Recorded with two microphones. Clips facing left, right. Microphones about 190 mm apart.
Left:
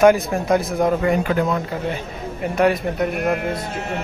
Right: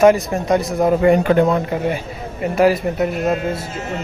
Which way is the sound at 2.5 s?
Centre (ahead or behind).